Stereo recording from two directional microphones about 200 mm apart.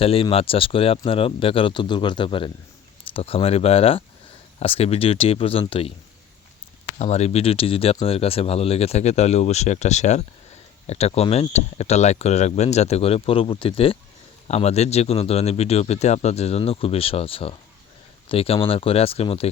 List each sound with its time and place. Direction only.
0.0 s speech: 30° left (ahead or behind)
7.0 s speech: 35° left (ahead or behind)